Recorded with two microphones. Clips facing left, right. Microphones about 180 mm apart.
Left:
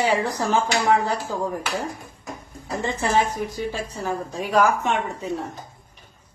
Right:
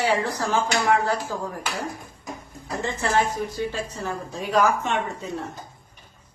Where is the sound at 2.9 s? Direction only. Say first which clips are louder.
Left 1 dB; 15° left (ahead or behind).